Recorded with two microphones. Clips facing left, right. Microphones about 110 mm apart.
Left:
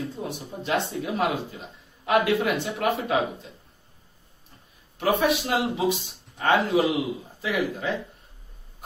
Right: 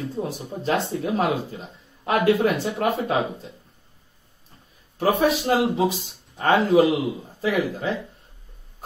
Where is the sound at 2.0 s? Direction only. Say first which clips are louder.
Right 3 dB; 35° right (ahead or behind).